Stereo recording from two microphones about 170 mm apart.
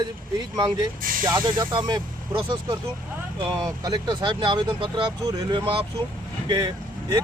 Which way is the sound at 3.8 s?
25° right (ahead or behind).